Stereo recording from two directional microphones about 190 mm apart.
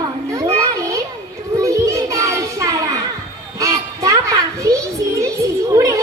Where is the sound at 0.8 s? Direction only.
15° right (ahead or behind).